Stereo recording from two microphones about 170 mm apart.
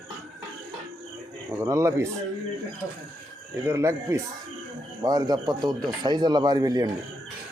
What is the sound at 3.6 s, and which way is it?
Speech, 15° right (ahead or behind).